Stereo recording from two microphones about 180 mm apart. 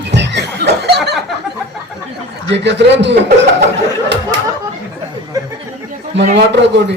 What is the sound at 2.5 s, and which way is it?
Speech, 75° right (ahead or behind).